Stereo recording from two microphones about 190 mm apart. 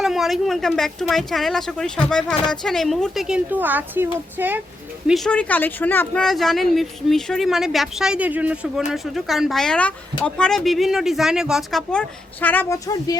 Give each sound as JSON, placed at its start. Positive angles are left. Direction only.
{"t": 0.0, "sound": "speech", "side_deg": 0}
{"t": 5.0, "sound": "speech", "side_deg": 0}